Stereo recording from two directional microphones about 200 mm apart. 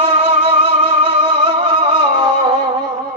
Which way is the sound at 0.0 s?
30° right (ahead or behind).